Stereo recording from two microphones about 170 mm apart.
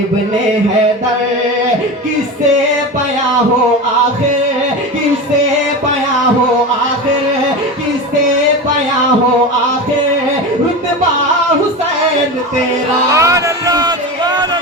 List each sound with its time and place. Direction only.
13.1 s music: 20° right (ahead or behind)